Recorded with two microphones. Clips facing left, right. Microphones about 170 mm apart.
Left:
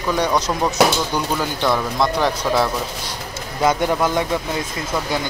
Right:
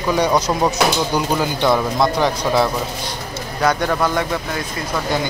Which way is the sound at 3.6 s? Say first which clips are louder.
Even; 20° left (ahead or behind).